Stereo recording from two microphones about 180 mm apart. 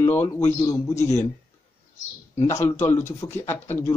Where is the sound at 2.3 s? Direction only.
15° left (ahead or behind).